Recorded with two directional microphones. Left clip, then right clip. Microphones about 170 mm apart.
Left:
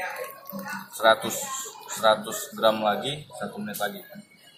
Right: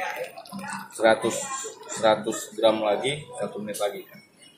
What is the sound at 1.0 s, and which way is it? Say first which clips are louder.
Speech: even; 30° right (ahead or behind).